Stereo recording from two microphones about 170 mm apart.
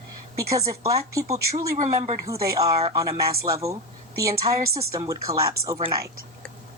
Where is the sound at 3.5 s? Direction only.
15° right (ahead or behind).